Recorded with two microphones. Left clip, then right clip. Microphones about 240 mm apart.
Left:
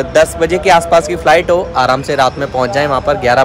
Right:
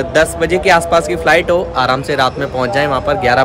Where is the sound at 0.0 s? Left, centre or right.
Centre.